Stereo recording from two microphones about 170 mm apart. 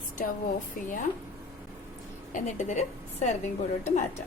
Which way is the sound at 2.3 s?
45° left (ahead or behind).